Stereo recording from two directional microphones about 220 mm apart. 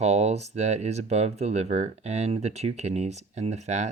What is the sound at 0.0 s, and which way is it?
Speech, 30° right (ahead or behind).